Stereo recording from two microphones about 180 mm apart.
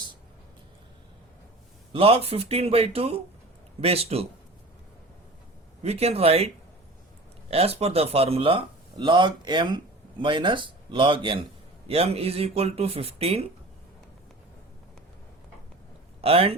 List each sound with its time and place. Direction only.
1.9 s speech: 30° right (ahead or behind)
5.8 s speech: 35° right (ahead or behind)
7.5 s speech: 35° right (ahead or behind)
16.2 s speech: 30° right (ahead or behind)